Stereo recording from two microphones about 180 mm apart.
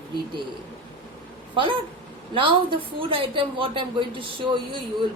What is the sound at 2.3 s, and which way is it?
A woman's voice, 30° right (ahead or behind).